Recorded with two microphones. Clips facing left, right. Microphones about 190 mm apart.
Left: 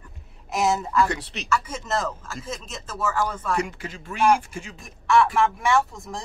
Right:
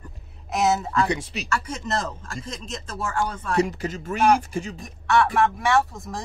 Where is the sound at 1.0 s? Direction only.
15° right (ahead or behind).